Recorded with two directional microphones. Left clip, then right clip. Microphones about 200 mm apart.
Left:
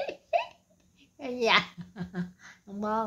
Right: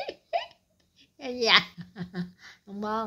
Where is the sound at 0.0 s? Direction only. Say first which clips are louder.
Left 2 dB; 15° right (ahead or behind).